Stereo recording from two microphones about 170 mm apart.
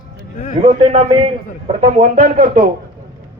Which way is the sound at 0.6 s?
35° right (ahead or behind).